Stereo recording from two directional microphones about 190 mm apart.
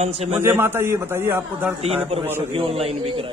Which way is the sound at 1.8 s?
30° right (ahead or behind).